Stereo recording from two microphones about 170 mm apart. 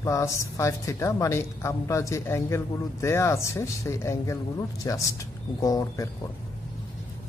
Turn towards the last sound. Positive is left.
turn(degrees=20)  # may be behind; listen again after turning